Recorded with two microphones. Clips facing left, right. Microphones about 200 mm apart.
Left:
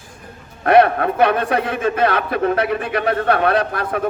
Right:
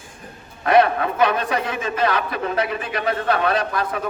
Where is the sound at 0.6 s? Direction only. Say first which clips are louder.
Left 3 dB; 55° left (ahead or behind).